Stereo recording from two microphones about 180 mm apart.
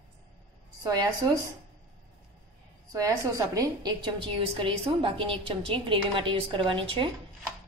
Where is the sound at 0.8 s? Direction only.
20° right (ahead or behind).